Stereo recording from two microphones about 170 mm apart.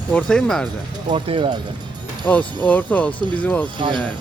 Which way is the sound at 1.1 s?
35° right (ahead or behind).